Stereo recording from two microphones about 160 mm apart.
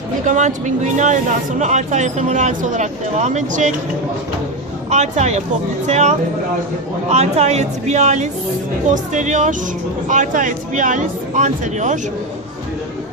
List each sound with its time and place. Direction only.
0.3 s speech: 50° right (ahead or behind)
4.9 s speech: 45° right (ahead or behind)